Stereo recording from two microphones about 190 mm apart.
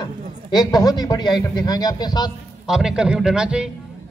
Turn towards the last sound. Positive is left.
turn(degrees=-5)  # may be behind; listen again after turning